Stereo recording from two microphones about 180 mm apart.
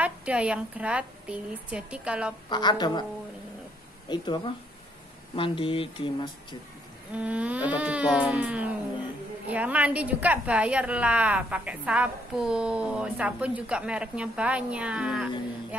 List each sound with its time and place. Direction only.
0.0 s a woman's voice: 5° right (ahead or behind)
2.5 s speech: 25° left (ahead or behind)
4.1 s speech: 25° left (ahead or behind)
5.3 s speech: 30° left (ahead or behind)
7.2 s a woman's voice: 5° right (ahead or behind)